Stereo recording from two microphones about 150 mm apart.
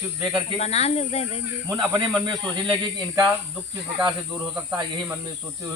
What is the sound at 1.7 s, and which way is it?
Speech, 25° right (ahead or behind).